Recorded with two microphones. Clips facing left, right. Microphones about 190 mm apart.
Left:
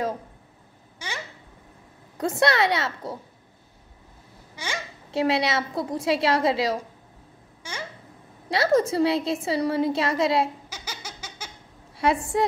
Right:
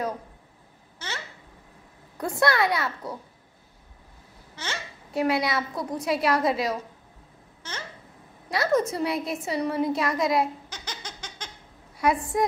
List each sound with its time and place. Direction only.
0.9 s a sound: 10° left (ahead or behind)
2.1 s a woman's voice: 20° left (ahead or behind)
4.6 s a child's voice: 10° left (ahead or behind)
5.1 s a woman's voice: 25° left (ahead or behind)
7.6 s a child's voice: 10° left (ahead or behind)
8.5 s a woman's voice: 30° left (ahead or behind)
10.7 s laughter: 10° left (ahead or behind)
12.0 s a woman's voice: 25° left (ahead or behind)